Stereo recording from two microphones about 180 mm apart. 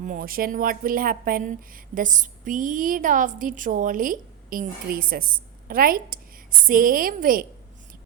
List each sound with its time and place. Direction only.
0.0 s a woman's voice: 50° right (ahead or behind)